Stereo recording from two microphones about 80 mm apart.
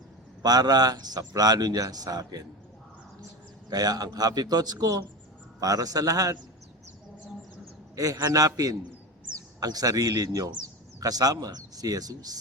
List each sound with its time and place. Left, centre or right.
0.4 s a man's voice: right
3.7 s a man's voice: right
7.9 s speech: right